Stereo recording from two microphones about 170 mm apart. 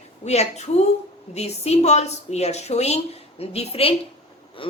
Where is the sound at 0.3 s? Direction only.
40° left (ahead or behind).